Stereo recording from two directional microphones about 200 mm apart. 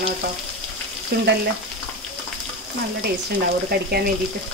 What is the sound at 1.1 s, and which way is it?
Frying, 55° right (ahead or behind).